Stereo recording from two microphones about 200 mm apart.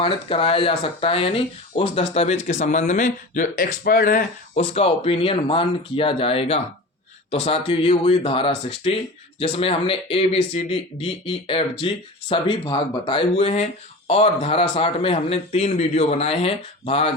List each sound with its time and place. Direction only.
0.0 s speech: 25° left (ahead or behind); by 4.2 s 45° left (ahead or behind)
4.5 s speech: 30° left (ahead or behind)